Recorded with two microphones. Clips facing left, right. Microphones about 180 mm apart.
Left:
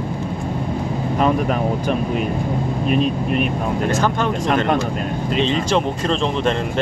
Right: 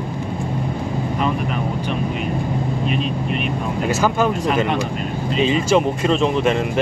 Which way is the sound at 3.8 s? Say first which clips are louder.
Right 3 dB; 10° right (ahead or behind).